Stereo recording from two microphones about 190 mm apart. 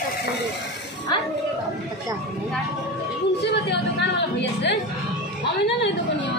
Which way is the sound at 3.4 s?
65° left (ahead or behind).